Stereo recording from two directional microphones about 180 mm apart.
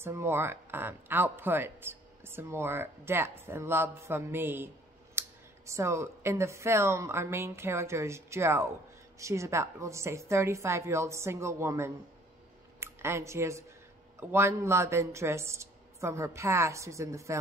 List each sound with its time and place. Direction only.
0.0 s speech: 15° right (ahead or behind)
5.2 s a sound: 15° right (ahead or behind)
5.7 s speech: 15° right (ahead or behind)